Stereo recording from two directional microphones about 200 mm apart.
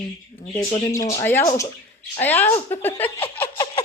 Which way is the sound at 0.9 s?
15° left (ahead or behind).